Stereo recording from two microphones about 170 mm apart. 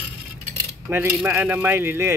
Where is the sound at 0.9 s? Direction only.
10° right (ahead or behind).